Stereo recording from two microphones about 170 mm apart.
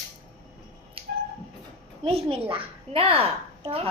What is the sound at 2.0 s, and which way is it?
A woman's voice, 35° right (ahead or behind).